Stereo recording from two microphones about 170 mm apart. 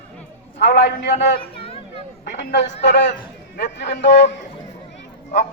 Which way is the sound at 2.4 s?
90° left.